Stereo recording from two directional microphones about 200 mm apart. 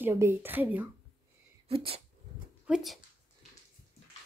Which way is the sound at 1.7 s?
25° right (ahead or behind).